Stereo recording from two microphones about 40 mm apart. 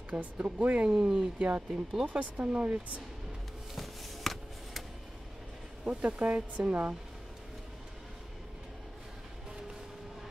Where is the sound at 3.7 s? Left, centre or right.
Centre.